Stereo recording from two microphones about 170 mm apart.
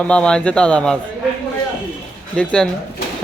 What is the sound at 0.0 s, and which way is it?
Speech, 5° left (ahead or behind).